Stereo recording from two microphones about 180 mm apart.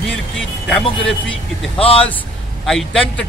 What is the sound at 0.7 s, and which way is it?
Speech, centre (ahead or behind).